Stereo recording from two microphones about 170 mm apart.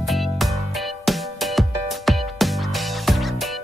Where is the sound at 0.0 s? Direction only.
Centre (ahead or behind).